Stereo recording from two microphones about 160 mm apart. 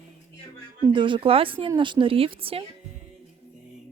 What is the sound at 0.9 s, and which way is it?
Speech, 30° right (ahead or behind).